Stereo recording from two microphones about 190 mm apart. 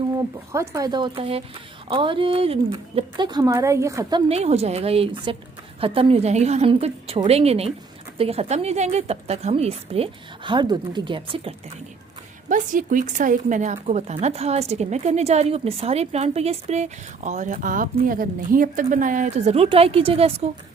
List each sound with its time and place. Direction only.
0.2 s speech: 15° right (ahead or behind)
4.3 s speech: 35° right (ahead or behind)
12.5 s speech: 45° right (ahead or behind)